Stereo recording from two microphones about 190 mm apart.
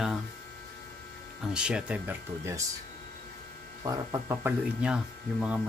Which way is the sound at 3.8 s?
20° right (ahead or behind).